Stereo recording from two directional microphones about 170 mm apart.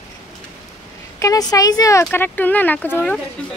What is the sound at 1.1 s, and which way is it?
Speech, 20° left (ahead or behind).